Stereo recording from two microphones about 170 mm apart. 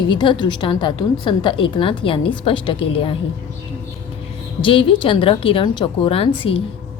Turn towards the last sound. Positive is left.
turn(degrees=35)  # may be behind; listen again after turning